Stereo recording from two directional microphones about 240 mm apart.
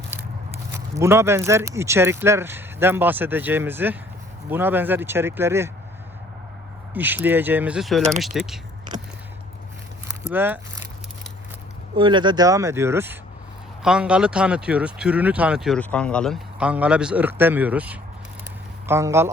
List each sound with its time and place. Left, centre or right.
0.7 s speech: centre
6.9 s speech: centre
10.1 s a sound: centre
11.9 s speech: centre